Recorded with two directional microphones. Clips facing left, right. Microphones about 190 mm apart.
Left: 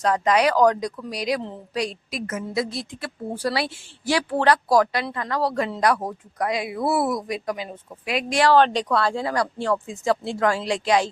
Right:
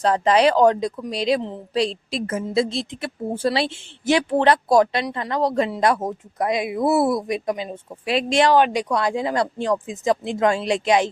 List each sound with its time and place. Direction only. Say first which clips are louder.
0.0 s speech: right 3 dB; 30° right (ahead or behind)